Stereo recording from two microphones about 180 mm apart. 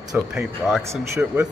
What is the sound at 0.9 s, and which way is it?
Speech, 15° right (ahead or behind).